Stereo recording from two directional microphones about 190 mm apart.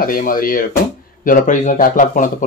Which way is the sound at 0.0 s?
50° left (ahead or behind).